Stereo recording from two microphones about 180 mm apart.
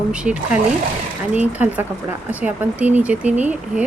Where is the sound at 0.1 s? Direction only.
5° right (ahead or behind).